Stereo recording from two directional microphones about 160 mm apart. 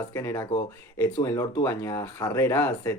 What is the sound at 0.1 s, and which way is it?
Speech, 20° left (ahead or behind).